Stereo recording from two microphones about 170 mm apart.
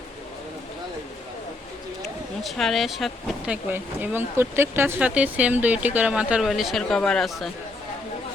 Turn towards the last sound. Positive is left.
turn(degrees=0)  # may be behind; listen again after turning